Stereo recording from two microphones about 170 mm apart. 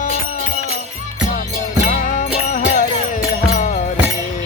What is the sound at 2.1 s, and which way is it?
Music, 50° left (ahead or behind).